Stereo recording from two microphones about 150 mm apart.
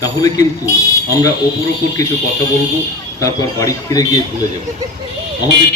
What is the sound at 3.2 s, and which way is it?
Speech, 20° left (ahead or behind).